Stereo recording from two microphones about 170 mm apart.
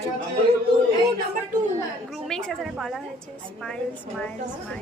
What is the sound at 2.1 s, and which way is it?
Speech, 5° left (ahead or behind).